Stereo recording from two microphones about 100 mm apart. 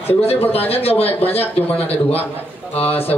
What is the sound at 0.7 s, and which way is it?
Speech, 80° left.